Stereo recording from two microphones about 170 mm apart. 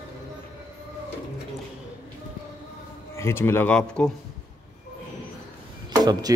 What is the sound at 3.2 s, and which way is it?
Speech, 15° left (ahead or behind).